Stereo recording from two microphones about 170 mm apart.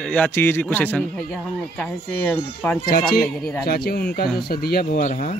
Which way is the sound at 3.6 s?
65° left (ahead or behind).